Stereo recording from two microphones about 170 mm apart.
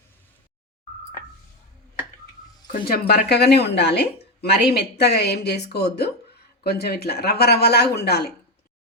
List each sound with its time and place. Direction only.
2.7 s speech: 60° left (ahead or behind)
3.1 s a woman's voice: 70° left (ahead or behind)